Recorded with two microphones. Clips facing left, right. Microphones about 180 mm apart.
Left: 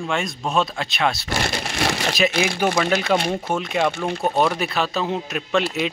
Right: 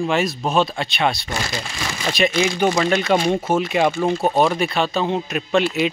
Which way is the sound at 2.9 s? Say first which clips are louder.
Right 3 dB; centre (ahead or behind).